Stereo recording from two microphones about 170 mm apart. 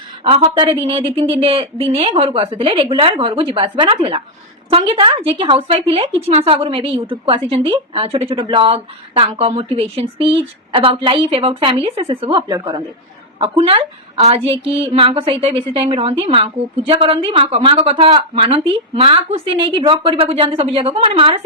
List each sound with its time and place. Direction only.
0.3 s speech: 35° right (ahead or behind)
13.4 s speech: 30° right (ahead or behind)